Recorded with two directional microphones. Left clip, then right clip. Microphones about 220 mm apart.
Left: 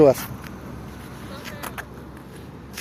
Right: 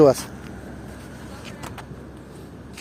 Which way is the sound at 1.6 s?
Centre (ahead or behind).